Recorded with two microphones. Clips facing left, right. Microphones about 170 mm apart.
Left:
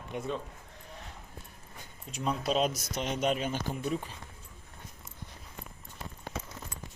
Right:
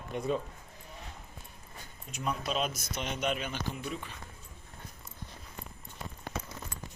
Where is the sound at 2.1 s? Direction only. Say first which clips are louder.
Left 4 dB; 30° left (ahead or behind).